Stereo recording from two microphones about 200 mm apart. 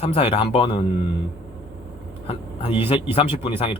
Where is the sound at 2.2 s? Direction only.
25° left (ahead or behind).